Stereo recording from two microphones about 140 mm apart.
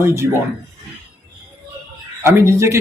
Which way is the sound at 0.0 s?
20° right (ahead or behind).